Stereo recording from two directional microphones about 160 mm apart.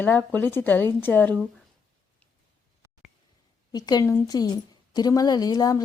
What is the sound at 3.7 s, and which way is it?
A woman's voice, 25° left (ahead or behind).